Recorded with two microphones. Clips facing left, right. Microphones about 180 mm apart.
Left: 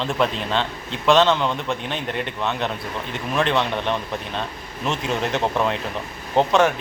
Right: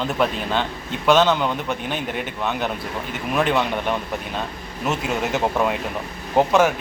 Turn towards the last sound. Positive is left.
turn(degrees=0)  # may be behind; listen again after turning